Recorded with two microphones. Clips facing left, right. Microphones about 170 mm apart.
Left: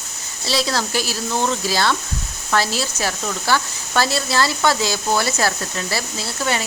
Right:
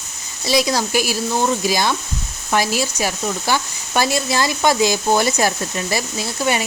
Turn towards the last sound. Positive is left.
turn(degrees=-15)  # may be behind; listen again after turning